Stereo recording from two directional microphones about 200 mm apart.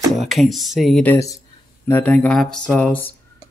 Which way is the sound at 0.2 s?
Centre (ahead or behind).